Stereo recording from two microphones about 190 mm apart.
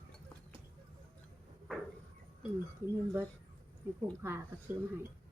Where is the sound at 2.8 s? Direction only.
15° right (ahead or behind).